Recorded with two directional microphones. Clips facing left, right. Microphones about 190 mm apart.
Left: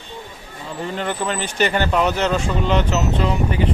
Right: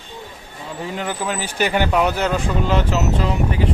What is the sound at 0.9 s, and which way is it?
Speech, 5° right (ahead or behind).